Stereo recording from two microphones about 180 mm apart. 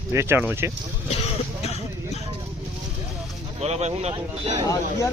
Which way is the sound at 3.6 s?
35° right (ahead or behind).